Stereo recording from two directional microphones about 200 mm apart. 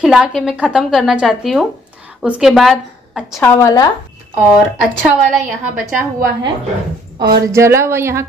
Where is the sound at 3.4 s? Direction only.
15° left (ahead or behind).